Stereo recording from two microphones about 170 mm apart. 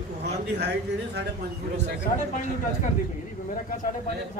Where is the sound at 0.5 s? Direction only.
80° right.